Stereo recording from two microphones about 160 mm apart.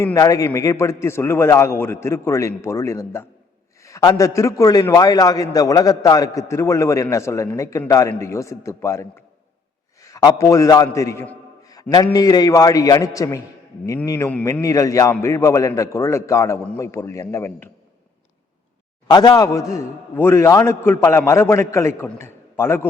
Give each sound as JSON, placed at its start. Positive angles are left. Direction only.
{"t": 0.0, "sound": "a man's voice", "side_deg": 20}
{"t": 19.0, "sound": "a man's voice", "side_deg": 25}